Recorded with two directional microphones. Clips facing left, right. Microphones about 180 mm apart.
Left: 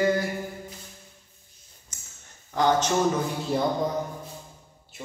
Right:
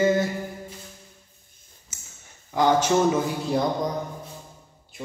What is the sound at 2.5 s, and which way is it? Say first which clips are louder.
Speech: right 2 dB; 10° right (ahead or behind).